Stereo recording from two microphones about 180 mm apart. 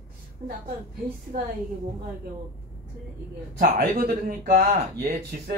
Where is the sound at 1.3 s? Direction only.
55° right (ahead or behind).